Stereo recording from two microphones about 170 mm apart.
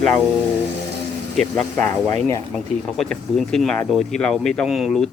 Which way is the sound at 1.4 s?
5° left (ahead or behind).